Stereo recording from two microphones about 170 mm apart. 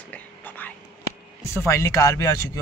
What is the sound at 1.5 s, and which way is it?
Speech, 15° left (ahead or behind).